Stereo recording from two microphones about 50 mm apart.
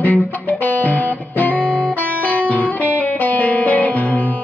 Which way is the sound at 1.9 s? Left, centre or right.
Right.